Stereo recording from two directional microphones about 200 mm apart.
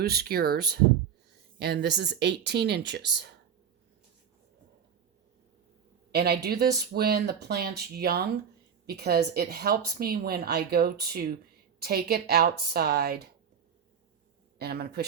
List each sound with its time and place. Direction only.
0.0 s a woman's voice: 50° right (ahead or behind)
6.1 s a woman's voice: 55° right (ahead or behind)
14.6 s a woman's voice: 50° right (ahead or behind)